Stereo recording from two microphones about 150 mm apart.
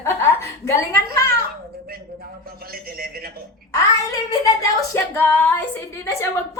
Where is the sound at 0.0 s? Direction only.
15° left (ahead or behind).